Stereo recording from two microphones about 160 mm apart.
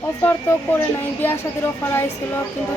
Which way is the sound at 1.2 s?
15° left (ahead or behind).